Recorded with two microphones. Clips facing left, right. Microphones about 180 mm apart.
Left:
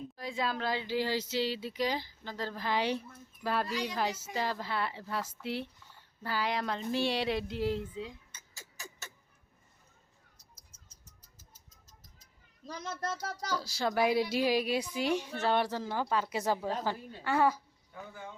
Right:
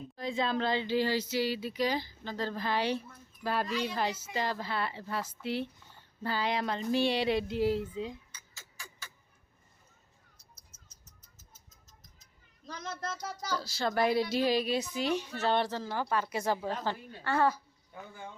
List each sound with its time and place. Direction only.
0.2 s speech: 5° left (ahead or behind)
0.9 s speech: 20° left (ahead or behind)
3.4 s speech: 10° right (ahead or behind)
3.7 s speech: 15° left (ahead or behind)
5.4 s speech: centre (ahead or behind)
6.2 s speech: 20° right (ahead or behind)
6.6 s speech: centre (ahead or behind)
8.5 s a sound: 40° left (ahead or behind)
10.3 s a sound: 35° left (ahead or behind)
12.8 s speech: 5° left (ahead or behind)